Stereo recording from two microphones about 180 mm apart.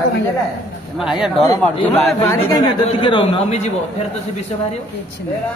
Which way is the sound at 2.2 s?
20° left (ahead or behind).